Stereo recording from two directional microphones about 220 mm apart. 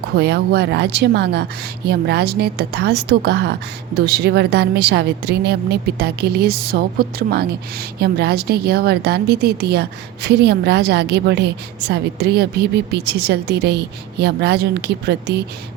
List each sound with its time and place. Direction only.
0.2 s a woman's voice: 50° right (ahead or behind)